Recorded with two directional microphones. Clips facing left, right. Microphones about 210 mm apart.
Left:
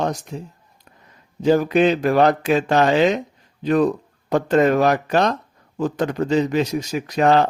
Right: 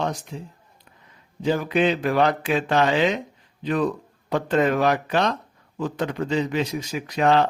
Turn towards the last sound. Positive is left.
turn(degrees=40)  # may be behind; listen again after turning